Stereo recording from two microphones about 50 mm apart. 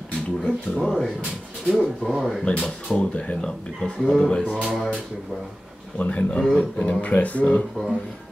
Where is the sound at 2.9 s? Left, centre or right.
Left.